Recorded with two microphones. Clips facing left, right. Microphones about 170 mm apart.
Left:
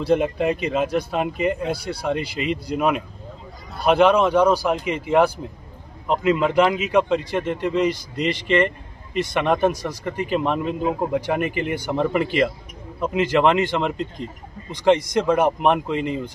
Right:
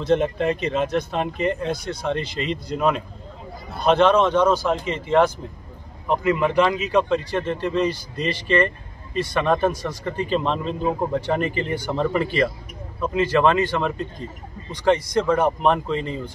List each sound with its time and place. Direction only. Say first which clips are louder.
0.0 s a man's voice: left 1 dB; 10° left (ahead or behind)